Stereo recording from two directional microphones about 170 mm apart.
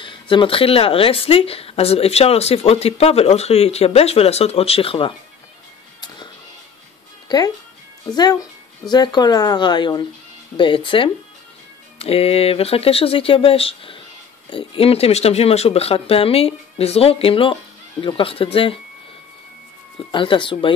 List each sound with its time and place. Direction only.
0.0 s speech: 30° left (ahead or behind)
7.2 s speech: 25° left (ahead or behind)
20.1 s speech: 30° left (ahead or behind)